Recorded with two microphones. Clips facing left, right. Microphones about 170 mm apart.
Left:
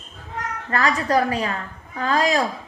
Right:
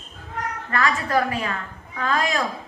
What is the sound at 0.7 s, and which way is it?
A woman's voice, 35° left (ahead or behind).